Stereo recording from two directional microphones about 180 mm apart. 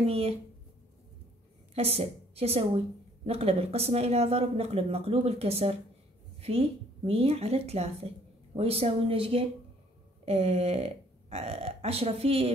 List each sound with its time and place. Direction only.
0.0 s speech: 35° right (ahead or behind)
1.8 s speech: 35° right (ahead or behind)